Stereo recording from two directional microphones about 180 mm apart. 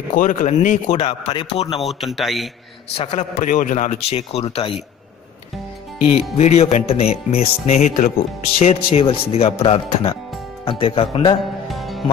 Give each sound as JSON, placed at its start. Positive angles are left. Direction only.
{"t": 0.1, "sound": "a man's voice", "side_deg": 45}
{"t": 1.8, "sound": "speech", "side_deg": 0}
{"t": 3.0, "sound": "a man's voice", "side_deg": 35}
{"t": 6.3, "sound": "a man's voice", "side_deg": 35}
{"t": 11.6, "sound": "music", "side_deg": 0}